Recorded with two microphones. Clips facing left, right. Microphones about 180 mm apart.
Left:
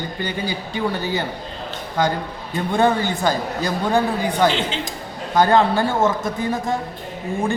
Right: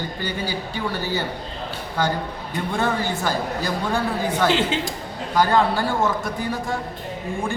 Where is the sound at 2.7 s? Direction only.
20° left (ahead or behind).